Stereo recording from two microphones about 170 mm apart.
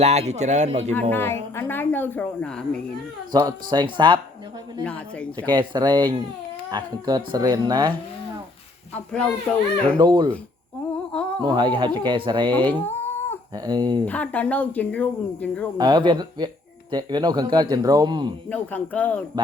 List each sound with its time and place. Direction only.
0.0 s a man's voice: 40° right (ahead or behind)
1.1 s speech: 15° left (ahead or behind)
3.3 s speech: 25° right (ahead or behind)
4.8 s speech: 5° left (ahead or behind)
5.5 s speech: 25° right (ahead or behind)
9.1 s a child's voice: 5° left (ahead or behind)
10.0 s speech: 25° right (ahead or behind)
11.1 s humming: 5° left (ahead or behind)
11.4 s speech: 30° right (ahead or behind)
12.8 s a sound: 10° left (ahead or behind)
13.5 s speech: 25° right (ahead or behind)
14.0 s speech: 10° left (ahead or behind)
15.8 s speech: 25° right (ahead or behind)
18.4 s speech: 10° left (ahead or behind)